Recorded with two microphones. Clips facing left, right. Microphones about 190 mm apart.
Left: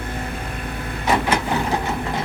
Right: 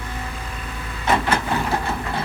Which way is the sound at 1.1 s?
10° left (ahead or behind).